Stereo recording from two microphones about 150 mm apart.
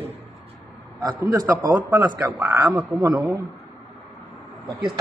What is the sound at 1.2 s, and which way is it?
Speech, 25° right (ahead or behind).